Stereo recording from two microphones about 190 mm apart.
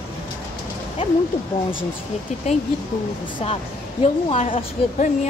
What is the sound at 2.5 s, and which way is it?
Speech, 35° left (ahead or behind).